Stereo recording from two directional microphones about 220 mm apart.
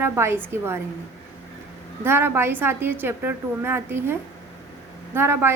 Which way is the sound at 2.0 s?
10° right (ahead or behind).